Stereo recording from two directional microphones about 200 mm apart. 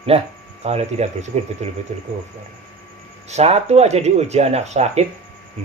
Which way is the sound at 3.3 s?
30° right (ahead or behind).